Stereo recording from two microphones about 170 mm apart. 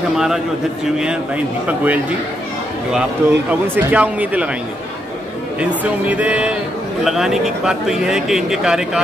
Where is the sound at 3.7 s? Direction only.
10° right (ahead or behind).